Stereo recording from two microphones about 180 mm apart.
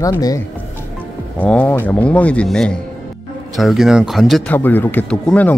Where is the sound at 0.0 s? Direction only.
20° left (ahead or behind).